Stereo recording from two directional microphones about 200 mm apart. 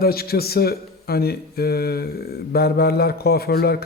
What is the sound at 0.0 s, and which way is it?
Speech, 50° left (ahead or behind).